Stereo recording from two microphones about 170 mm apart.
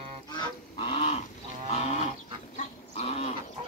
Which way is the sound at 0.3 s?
25° left (ahead or behind).